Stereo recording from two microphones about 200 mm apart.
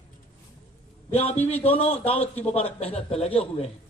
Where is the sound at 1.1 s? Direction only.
30° left (ahead or behind).